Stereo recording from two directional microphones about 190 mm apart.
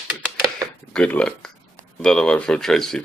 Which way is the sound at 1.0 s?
5° left (ahead or behind).